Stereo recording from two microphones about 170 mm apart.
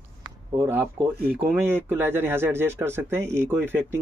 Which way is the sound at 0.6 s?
10° right (ahead or behind).